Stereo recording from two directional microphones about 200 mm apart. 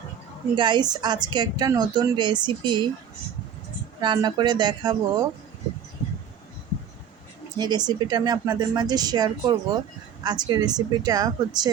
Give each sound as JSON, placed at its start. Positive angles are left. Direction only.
{"t": 0.5, "sound": "speech", "side_deg": -25}
{"t": 4.0, "sound": "speech", "side_deg": -20}
{"t": 7.6, "sound": "speech", "side_deg": -20}